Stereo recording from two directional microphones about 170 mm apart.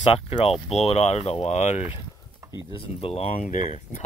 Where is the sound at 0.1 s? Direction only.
35° left (ahead or behind).